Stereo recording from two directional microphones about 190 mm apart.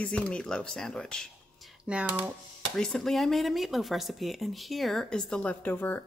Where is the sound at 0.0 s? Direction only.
5° left (ahead or behind).